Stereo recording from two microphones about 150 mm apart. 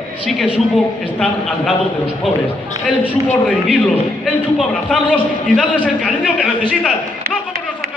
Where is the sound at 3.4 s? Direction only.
5° left (ahead or behind).